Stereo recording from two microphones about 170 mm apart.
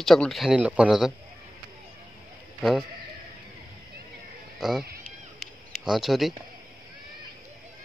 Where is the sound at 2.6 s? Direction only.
Centre (ahead or behind).